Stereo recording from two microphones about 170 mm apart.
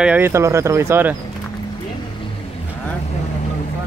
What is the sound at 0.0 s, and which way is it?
Speech, 10° right (ahead or behind).